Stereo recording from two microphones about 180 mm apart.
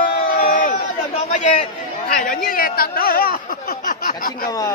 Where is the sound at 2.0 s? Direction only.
50° left (ahead or behind).